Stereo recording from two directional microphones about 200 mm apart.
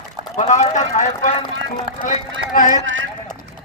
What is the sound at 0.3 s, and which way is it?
A man's voice, 35° left (ahead or behind).